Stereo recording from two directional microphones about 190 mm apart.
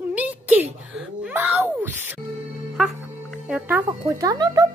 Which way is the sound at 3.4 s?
10° right (ahead or behind).